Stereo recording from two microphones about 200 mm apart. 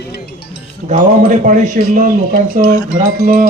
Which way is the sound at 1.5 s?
40° right (ahead or behind).